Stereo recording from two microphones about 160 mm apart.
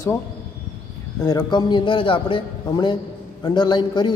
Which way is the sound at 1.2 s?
25° left (ahead or behind).